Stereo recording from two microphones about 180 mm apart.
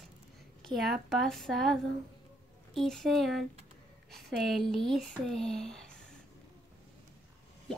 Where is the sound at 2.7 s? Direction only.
Centre (ahead or behind).